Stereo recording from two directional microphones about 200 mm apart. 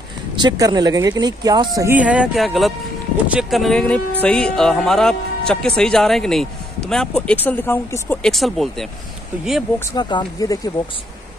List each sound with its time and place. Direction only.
0.4 s speech: 20° right (ahead or behind); by 8.8 s centre (ahead or behind)
9.9 s speech: 20° left (ahead or behind)